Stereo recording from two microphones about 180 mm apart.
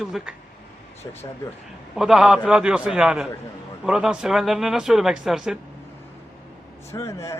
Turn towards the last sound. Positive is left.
turn(degrees=15)  # may be behind; listen again after turning